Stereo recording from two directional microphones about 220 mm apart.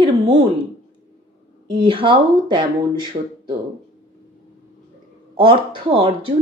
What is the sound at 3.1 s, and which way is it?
Speech, 35° right (ahead or behind).